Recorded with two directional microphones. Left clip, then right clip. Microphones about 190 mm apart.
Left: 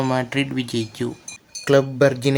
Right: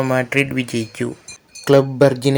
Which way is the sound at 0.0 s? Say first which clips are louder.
Right 4 dB; 10° right (ahead or behind).